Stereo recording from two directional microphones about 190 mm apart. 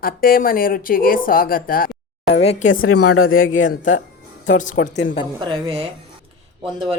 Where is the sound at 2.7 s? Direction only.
90° left.